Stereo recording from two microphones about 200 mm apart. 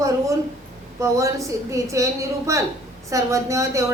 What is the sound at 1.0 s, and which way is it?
A woman's voice, 15° right (ahead or behind).